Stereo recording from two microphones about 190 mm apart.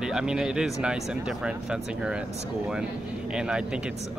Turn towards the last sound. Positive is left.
turn(degrees=-5)  # may be behind; listen again after turning